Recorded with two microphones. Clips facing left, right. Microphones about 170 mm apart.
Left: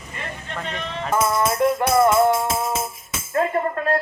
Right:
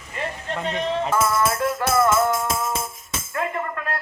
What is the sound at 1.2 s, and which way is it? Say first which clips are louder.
Music: left 2 dB; 25° left (ahead or behind).